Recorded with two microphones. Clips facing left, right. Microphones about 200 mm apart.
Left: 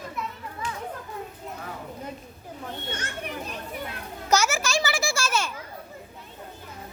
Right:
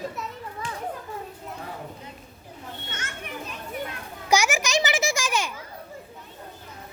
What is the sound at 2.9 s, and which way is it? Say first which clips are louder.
Children playing: left 5 dB; 35° left (ahead or behind).